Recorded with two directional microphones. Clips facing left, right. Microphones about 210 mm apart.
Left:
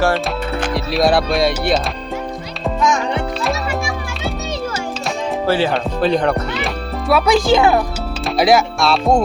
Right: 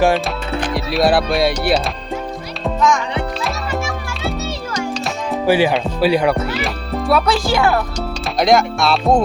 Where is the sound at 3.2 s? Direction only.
Centre (ahead or behind).